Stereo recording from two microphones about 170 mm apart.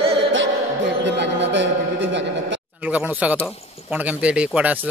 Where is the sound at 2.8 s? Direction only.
10° right (ahead or behind).